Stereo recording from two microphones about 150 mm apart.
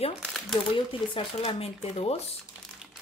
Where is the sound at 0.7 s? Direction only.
35° left (ahead or behind).